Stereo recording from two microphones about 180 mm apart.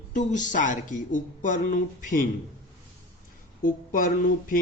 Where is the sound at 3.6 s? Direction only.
50° left (ahead or behind).